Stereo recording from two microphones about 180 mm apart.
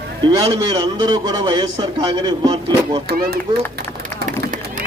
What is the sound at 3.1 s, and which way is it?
Speech, 60° right (ahead or behind).